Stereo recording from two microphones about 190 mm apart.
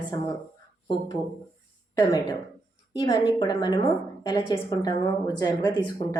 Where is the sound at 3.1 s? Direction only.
25° left (ahead or behind).